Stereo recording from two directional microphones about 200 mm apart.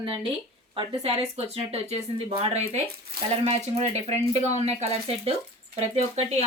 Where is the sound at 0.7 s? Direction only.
25° right (ahead or behind).